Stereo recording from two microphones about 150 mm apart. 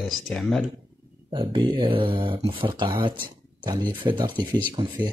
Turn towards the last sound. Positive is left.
turn(degrees=-35)  # may be behind; listen again after turning